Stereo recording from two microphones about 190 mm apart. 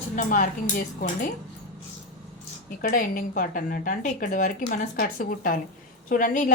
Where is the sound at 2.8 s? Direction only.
45° left (ahead or behind).